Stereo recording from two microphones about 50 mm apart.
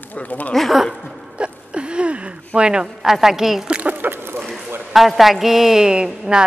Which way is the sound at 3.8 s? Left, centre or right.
Right.